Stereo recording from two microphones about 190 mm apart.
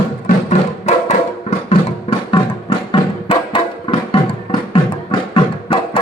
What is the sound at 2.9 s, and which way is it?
Music, 25° left (ahead or behind).